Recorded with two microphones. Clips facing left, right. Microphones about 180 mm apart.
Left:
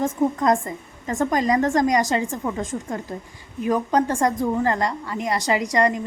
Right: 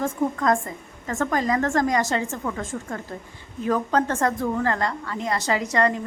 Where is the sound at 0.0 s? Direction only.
20° left (ahead or behind).